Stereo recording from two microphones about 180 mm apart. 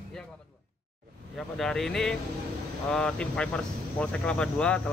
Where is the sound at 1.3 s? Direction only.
Centre (ahead or behind).